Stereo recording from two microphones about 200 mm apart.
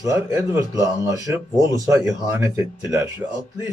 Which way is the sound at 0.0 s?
15° right (ahead or behind).